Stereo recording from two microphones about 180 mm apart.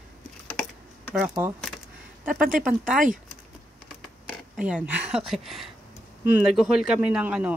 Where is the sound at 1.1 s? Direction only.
5° right (ahead or behind).